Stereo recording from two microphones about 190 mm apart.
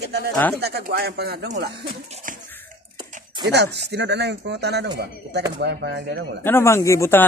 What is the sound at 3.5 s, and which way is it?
Speech, 65° right (ahead or behind).